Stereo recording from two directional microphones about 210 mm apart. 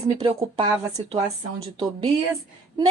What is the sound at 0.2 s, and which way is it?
Speech, 20° right (ahead or behind).